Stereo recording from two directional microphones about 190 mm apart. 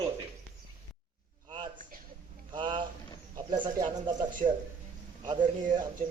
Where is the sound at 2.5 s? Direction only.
25° right (ahead or behind).